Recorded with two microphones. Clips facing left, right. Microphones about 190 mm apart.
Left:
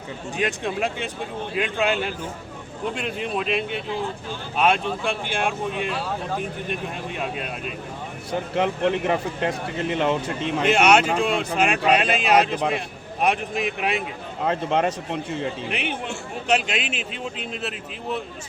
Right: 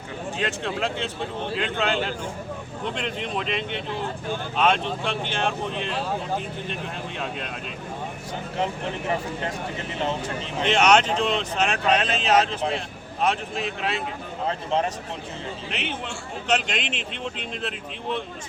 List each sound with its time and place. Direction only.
0.3 s a man's voice: 15° left (ahead or behind)
8.5 s speech: 70° left (ahead or behind)
10.7 s a man's voice: 10° left (ahead or behind)
14.4 s speech: 70° left (ahead or behind)
15.7 s a man's voice: 10° left (ahead or behind)